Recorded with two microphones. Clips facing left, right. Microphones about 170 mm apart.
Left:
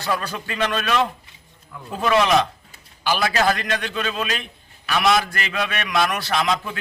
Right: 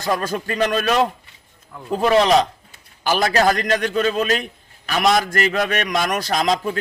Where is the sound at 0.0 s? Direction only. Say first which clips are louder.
Right 4 dB; 45° right (ahead or behind).